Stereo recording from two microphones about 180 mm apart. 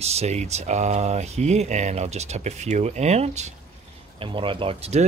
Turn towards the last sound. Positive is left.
turn(degrees=-35)  # may be behind; listen again after turning